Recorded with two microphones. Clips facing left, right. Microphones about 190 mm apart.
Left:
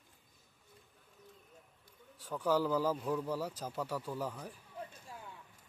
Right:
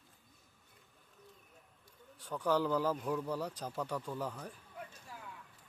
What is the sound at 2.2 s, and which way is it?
A man's voice, 10° left (ahead or behind).